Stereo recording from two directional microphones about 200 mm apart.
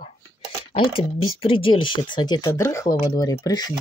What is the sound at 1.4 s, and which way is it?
Speech, 25° left (ahead or behind).